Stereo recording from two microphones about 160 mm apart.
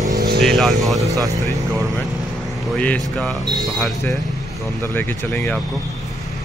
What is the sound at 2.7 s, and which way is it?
Speech, 10° left (ahead or behind).